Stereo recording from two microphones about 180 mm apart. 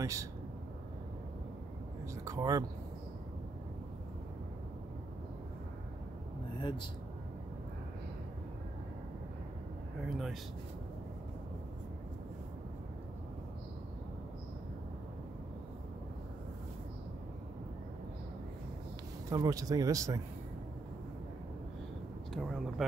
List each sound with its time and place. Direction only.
0.0 s speech: 15° right (ahead or behind)
2.2 s speech: 20° right (ahead or behind)
10.0 s speech: centre (ahead or behind)
19.2 s speech: 20° right (ahead or behind)
22.3 s speech: centre (ahead or behind)